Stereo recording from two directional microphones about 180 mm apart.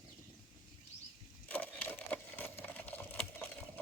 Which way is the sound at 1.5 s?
10° left (ahead or behind).